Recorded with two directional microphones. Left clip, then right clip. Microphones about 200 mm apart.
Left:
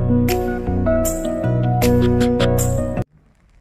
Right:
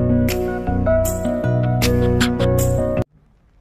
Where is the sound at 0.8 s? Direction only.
Centre (ahead or behind).